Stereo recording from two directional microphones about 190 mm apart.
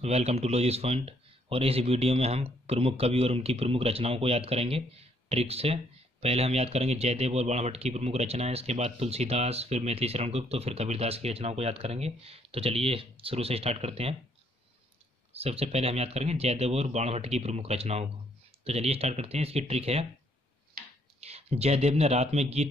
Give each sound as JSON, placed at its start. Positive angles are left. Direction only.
{"t": 0.0, "sound": "speech", "side_deg": -35}
{"t": 15.3, "sound": "speech", "side_deg": -30}
{"t": 21.2, "sound": "speech", "side_deg": -35}